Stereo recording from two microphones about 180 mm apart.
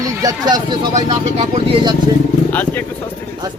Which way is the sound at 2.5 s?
10° left (ahead or behind).